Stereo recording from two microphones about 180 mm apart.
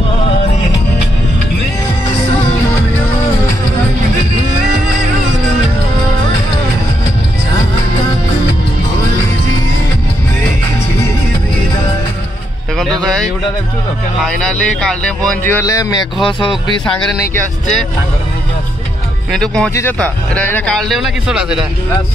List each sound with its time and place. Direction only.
14.4 s speech: 5° left (ahead or behind); by 16.5 s 25° left (ahead or behind)
16.8 s speech: 5° left (ahead or behind)
19.3 s speech: 5° left (ahead or behind)